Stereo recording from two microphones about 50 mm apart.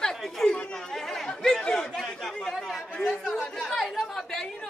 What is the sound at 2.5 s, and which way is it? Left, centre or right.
Chatter, centre.